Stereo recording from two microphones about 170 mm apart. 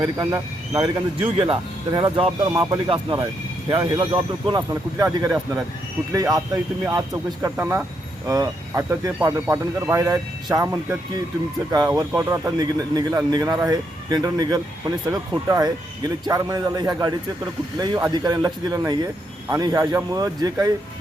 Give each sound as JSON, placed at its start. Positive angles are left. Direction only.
{"t": 0.0, "sound": "speech", "side_deg": -25}